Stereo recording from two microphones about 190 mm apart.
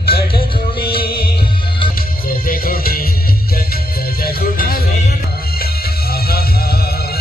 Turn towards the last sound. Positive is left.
turn(degrees=55)  # may be behind; listen again after turning